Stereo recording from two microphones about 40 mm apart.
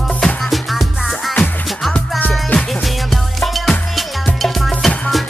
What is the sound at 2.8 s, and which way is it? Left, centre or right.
Music, centre.